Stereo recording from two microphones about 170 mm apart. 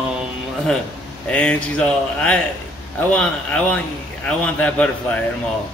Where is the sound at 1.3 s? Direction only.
5° left (ahead or behind).